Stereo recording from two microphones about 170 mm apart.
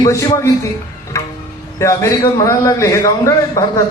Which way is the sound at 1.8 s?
20° left (ahead or behind).